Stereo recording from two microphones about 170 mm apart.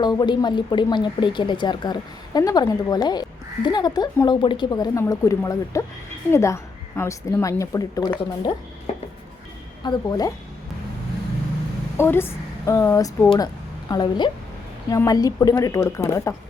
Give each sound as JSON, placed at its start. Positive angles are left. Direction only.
{"t": 0.0, "sound": "a woman's voice", "side_deg": 25}
{"t": 8.9, "sound": "a sound", "side_deg": 40}
{"t": 9.8, "sound": "speech", "side_deg": 25}
{"t": 11.9, "sound": "a woman's voice", "side_deg": 15}